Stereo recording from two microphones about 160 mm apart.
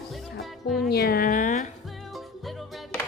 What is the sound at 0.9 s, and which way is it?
Speech, 75° left (ahead or behind).